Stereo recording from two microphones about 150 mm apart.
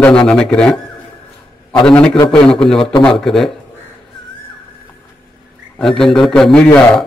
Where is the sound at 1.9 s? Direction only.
5° left (ahead or behind).